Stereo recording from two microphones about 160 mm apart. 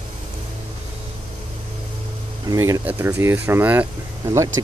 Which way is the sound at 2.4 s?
20° right (ahead or behind).